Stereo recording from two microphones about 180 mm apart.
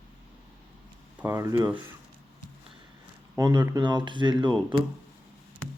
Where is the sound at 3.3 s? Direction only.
20° right (ahead or behind).